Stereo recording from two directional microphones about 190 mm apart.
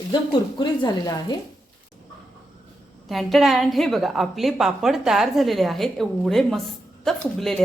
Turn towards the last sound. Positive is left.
turn(degrees=0)  # may be behind; listen again after turning